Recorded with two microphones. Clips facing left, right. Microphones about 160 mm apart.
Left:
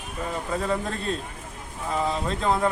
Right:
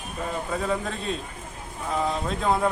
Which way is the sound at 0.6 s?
Centre (ahead or behind).